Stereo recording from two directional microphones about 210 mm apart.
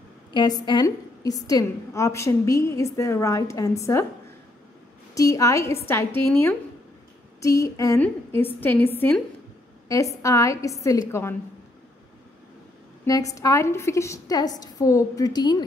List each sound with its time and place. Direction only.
0.3 s a woman's voice: 20° left (ahead or behind)
5.1 s a woman's voice: 15° left (ahead or behind)
13.0 s a woman's voice: 15° left (ahead or behind)